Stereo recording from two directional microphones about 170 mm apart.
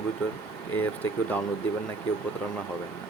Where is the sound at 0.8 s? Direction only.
10° left (ahead or behind).